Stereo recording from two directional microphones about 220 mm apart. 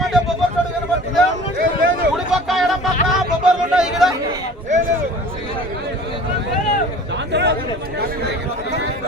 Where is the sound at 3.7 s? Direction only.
Centre (ahead or behind).